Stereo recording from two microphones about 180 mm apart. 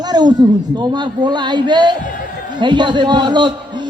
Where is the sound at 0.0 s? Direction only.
25° right (ahead or behind).